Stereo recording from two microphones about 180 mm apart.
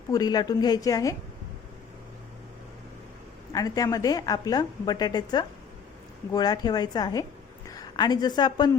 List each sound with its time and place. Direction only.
0.1 s a woman's voice: 20° left (ahead or behind)
3.5 s a woman's voice: 20° left (ahead or behind)